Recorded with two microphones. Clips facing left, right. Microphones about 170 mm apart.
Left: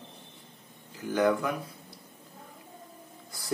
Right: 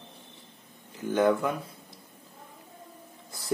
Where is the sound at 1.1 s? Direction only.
25° right (ahead or behind).